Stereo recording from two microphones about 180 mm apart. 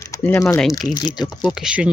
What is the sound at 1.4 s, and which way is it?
Speech, centre (ahead or behind).